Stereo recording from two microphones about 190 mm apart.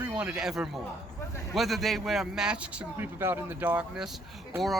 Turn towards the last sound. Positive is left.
turn(degrees=0)  # may be behind; listen again after turning